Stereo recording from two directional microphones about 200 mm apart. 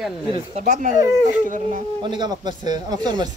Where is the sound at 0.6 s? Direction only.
40° right (ahead or behind).